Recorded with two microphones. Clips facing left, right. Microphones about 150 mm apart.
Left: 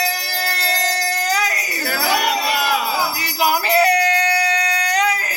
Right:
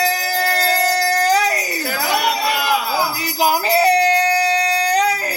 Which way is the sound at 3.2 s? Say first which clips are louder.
Right 1 dB; 35° right (ahead or behind).